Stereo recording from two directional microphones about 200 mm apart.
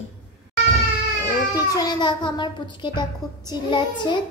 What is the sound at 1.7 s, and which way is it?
A child's voice, 20° left (ahead or behind).